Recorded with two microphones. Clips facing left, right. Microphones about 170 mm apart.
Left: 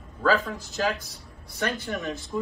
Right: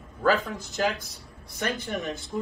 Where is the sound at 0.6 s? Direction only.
20° right (ahead or behind).